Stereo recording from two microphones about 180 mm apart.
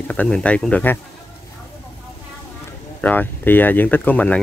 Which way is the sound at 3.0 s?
10° left (ahead or behind).